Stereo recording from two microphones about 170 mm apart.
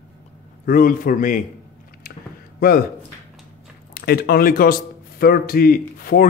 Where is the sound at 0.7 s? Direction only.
55° left (ahead or behind).